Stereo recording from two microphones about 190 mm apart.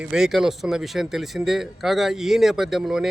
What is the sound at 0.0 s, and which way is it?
Speech, 5° right (ahead or behind).